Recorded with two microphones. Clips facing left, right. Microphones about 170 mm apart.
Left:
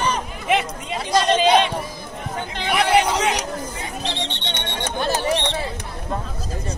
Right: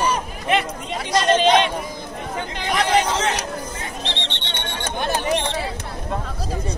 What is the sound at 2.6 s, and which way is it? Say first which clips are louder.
Chatter: left 2 dB; 10° left (ahead or behind).